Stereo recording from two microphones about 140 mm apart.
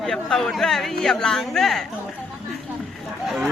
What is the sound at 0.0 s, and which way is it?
Speech, 5° left (ahead or behind).